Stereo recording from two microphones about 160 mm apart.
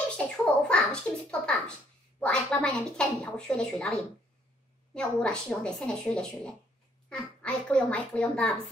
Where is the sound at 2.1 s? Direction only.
5° left (ahead or behind).